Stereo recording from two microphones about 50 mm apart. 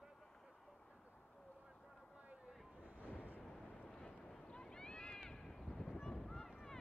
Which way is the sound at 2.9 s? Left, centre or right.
Left.